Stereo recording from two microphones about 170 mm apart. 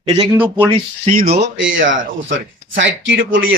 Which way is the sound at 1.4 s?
90° right.